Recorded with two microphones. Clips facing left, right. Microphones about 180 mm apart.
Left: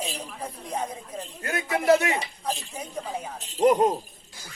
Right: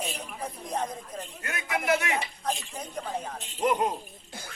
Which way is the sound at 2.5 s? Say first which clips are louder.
Left 2 dB; 5° left (ahead or behind).